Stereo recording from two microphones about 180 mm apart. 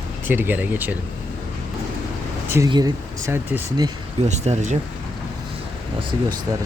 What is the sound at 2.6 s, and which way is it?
Speech, 20° right (ahead or behind).